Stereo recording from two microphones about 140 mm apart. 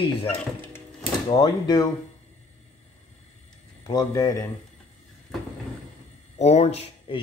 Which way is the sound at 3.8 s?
25° left (ahead or behind).